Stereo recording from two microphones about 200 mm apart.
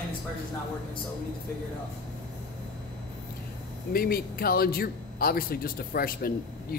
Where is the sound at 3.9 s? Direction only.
50° left (ahead or behind).